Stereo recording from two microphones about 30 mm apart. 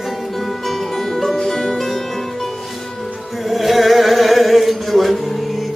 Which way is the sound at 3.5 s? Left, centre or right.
Centre.